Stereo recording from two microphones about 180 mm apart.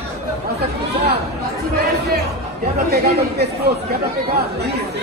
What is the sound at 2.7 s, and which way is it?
Speech, 60° right (ahead or behind).